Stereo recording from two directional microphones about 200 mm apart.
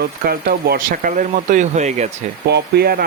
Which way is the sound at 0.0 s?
50° right (ahead or behind).